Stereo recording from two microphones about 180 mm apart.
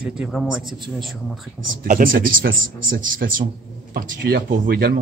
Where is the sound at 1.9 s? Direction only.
50° right (ahead or behind).